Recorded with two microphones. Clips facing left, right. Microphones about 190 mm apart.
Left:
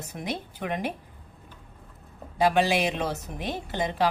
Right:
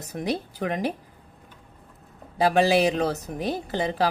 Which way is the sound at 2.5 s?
35° right (ahead or behind).